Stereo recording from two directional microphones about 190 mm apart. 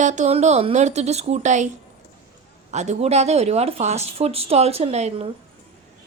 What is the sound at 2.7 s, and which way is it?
Speech, 35° right (ahead or behind).